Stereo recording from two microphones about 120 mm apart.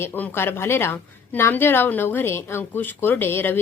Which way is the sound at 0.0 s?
20° left (ahead or behind).